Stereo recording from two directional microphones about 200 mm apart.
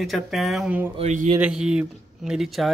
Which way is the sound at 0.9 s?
35° right (ahead or behind).